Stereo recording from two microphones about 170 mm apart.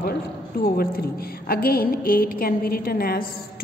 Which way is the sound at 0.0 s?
65° left (ahead or behind).